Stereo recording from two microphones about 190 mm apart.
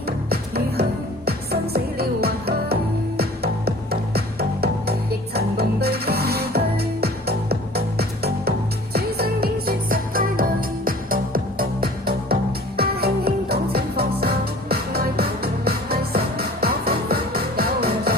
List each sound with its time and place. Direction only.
0.3 s music: 55° right (ahead or behind)
4.1 s music: 55° right (ahead or behind)
7.8 s music: 55° right (ahead or behind)